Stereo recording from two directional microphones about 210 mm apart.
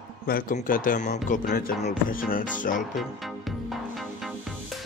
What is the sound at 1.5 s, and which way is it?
Music, 50° left (ahead or behind).